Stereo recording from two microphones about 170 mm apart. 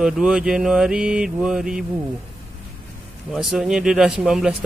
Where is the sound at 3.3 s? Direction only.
5° right (ahead or behind).